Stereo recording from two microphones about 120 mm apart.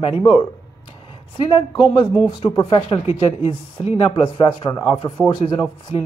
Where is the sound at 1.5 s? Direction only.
45° left (ahead or behind).